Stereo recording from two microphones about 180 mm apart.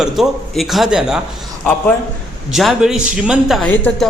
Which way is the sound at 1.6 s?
10° left (ahead or behind).